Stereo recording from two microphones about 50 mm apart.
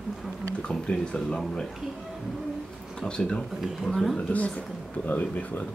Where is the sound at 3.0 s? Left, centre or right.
Centre.